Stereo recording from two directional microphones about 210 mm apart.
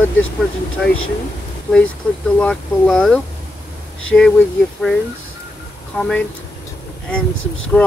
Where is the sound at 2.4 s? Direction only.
5° left (ahead or behind).